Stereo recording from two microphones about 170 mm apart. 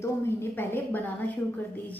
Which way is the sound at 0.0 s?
15° left (ahead or behind).